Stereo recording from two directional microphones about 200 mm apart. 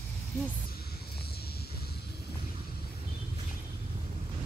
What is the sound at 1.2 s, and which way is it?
Vehicle, 50° left (ahead or behind).